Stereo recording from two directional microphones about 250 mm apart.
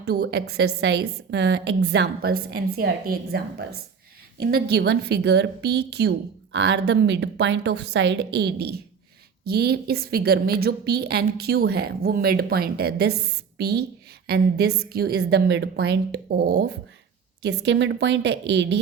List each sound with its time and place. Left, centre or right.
0.0 s a woman's voice: right